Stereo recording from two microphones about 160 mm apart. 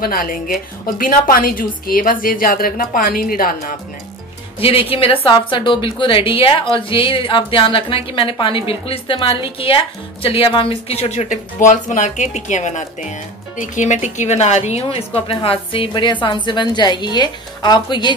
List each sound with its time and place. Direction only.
0.0 s a woman's voice: 60° left (ahead or behind)
4.6 s a woman's voice: 35° left (ahead or behind)